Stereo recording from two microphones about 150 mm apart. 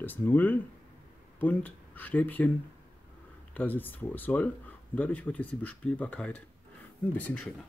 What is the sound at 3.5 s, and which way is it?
Speech, 10° left (ahead or behind).